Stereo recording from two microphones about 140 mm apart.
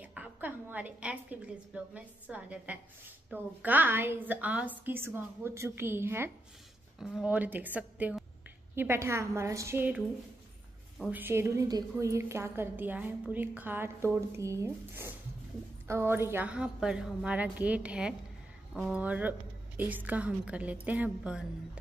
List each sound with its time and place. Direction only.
0.0 s a woman's voice: 10° right (ahead or behind)
11.1 s a woman's voice: 15° right (ahead or behind)